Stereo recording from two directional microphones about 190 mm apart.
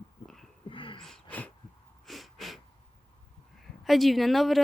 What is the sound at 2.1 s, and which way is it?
Wheeze, centre (ahead or behind).